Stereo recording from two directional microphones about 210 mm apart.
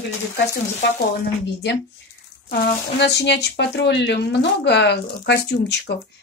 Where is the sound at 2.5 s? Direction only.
55° left (ahead or behind).